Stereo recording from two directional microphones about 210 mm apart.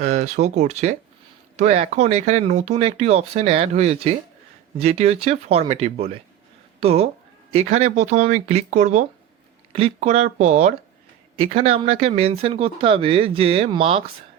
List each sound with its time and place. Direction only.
0.0 s speech: 30° right (ahead or behind)